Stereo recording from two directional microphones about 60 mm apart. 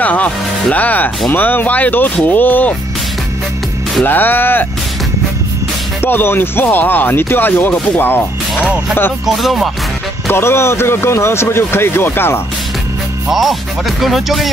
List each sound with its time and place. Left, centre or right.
0.0 s speech: left
4.0 s speech: left
6.0 s speech: left
9.2 s speech: centre
10.2 s speech: left
13.3 s speech: centre